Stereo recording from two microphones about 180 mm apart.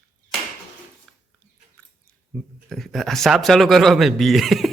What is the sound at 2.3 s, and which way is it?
A man's voice, 5° left (ahead or behind).